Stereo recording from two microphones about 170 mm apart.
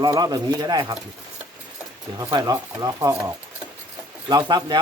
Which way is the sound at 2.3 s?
20° right (ahead or behind).